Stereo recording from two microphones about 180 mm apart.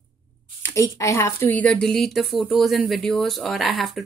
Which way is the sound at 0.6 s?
15° left (ahead or behind).